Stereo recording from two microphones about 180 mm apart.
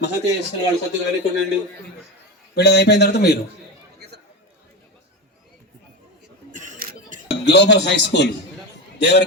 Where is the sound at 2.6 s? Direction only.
65° left (ahead or behind).